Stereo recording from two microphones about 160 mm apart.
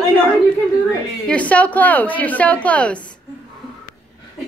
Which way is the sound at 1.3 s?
10° left (ahead or behind).